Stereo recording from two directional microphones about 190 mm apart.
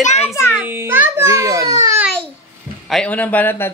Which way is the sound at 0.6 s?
10° right (ahead or behind).